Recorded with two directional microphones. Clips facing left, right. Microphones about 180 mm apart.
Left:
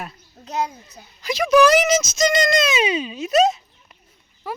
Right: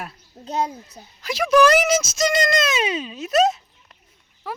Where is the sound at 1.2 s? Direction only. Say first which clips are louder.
Left 1 dB; 5° right (ahead or behind).